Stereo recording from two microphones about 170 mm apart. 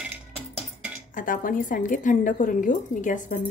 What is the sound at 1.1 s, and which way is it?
A woman's voice, 50° left (ahead or behind).